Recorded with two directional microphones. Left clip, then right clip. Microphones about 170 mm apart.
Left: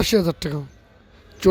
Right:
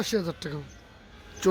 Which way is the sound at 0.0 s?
35° left (ahead or behind).